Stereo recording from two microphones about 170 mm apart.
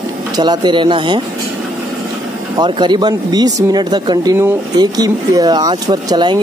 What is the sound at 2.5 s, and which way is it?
Speech, 25° right (ahead or behind).